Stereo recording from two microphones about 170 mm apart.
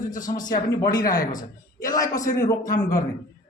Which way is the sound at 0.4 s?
25° left (ahead or behind).